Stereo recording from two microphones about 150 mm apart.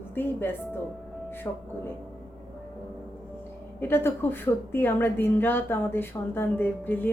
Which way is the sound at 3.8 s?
15° left (ahead or behind).